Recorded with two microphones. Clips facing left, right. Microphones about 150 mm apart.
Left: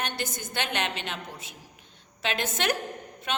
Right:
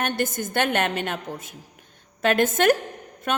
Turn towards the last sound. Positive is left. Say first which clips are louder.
# right 5 dB
turn(degrees=-50)  # may be behind; listen again after turning